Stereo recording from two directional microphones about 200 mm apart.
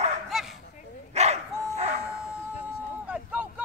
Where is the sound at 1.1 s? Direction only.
35° right (ahead or behind).